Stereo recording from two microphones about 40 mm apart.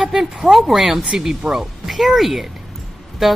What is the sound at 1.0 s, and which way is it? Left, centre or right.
Speech, right.